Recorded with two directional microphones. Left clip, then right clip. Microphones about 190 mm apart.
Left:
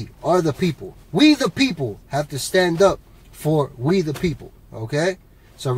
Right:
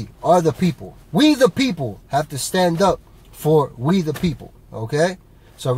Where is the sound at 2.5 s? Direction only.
10° right (ahead or behind).